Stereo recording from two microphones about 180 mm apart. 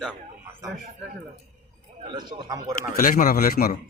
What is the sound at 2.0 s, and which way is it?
Speech, 20° right (ahead or behind).